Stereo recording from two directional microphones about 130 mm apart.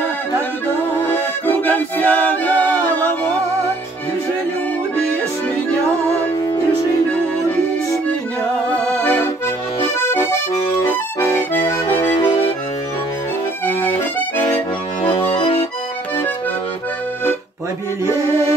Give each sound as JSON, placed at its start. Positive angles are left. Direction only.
{"t": 1.1, "sound": "music", "side_deg": 15}
{"t": 8.7, "sound": "accordion", "side_deg": 15}
{"t": 13.7, "sound": "accordion", "side_deg": 15}
{"t": 15.3, "sound": "accordion", "side_deg": 40}